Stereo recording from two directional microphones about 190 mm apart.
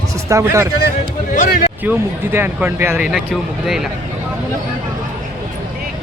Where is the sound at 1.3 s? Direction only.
40° left (ahead or behind).